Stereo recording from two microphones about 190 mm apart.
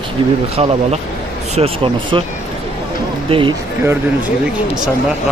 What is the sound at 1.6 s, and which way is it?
Speech, 30° right (ahead or behind).